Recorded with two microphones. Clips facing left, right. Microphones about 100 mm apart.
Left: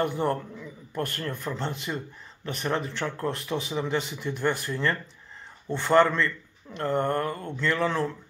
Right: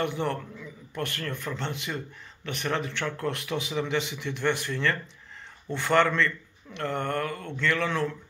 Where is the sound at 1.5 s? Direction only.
35° left (ahead or behind).